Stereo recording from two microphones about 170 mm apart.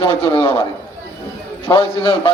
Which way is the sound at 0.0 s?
35° left (ahead or behind).